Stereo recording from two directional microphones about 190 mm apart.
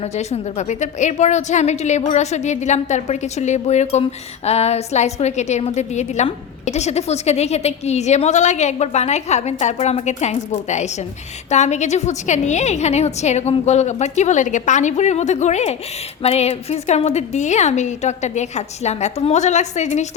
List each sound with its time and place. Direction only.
0.0 s a woman's voice: 35° left (ahead or behind)